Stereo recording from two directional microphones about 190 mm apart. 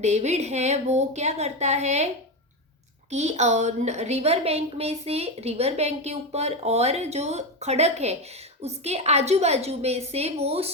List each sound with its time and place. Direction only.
0.0 s a woman's voice: 35° right (ahead or behind)
3.1 s a woman's voice: 35° right (ahead or behind)